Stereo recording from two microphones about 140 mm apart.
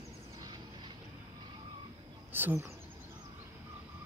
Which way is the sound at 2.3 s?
15° right (ahead or behind).